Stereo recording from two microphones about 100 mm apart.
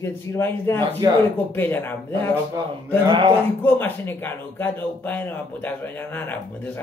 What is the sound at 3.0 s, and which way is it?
Speech, 50° right (ahead or behind).